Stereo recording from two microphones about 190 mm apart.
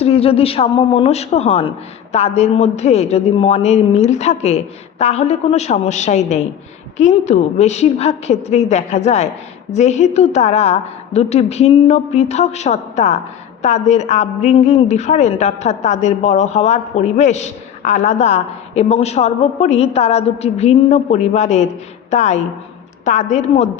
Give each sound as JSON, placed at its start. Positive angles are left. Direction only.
{"t": 0.0, "sound": "a woman's voice", "side_deg": 30}